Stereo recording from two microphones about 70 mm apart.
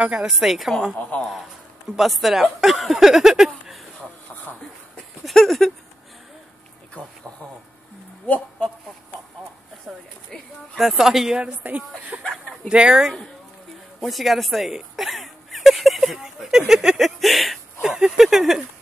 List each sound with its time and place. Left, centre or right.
0.0 s speech: centre
0.3 s speech: centre
1.1 s a man's voice: left
2.0 s speech: centre
5.2 s a sound: centre
7.0 s a sound: left
9.9 s a sound: centre
10.8 s speech: centre
11.5 s speech: right
12.6 s speech: centre
14.0 s speech: centre